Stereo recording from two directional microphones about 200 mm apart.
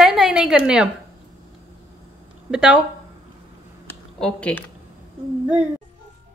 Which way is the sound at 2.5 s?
5° right (ahead or behind).